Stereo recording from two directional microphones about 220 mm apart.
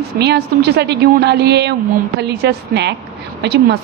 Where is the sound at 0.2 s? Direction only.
50° right (ahead or behind).